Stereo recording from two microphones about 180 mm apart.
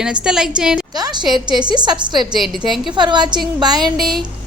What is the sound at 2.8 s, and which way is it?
Speech, 25° right (ahead or behind).